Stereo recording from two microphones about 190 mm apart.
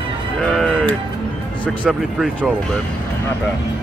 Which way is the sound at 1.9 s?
Centre (ahead or behind).